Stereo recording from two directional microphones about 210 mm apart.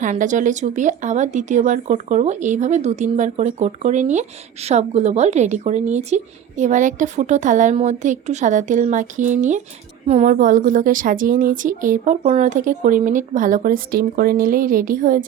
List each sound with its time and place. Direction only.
0.0 s speech: 35° right (ahead or behind)